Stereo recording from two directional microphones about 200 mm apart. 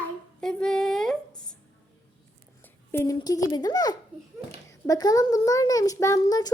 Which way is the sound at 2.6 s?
15° left (ahead or behind).